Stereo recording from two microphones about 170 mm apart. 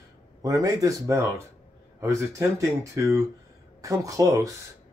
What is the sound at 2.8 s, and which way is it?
Speech, 20° right (ahead or behind).